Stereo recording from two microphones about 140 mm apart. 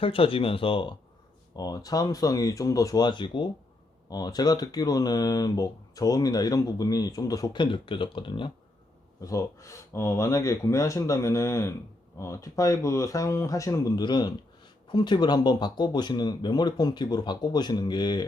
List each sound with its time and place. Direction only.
0.0 s speech: 40° left (ahead or behind)
1.5 s speech: 25° left (ahead or behind)
9.2 s speech: 20° left (ahead or behind)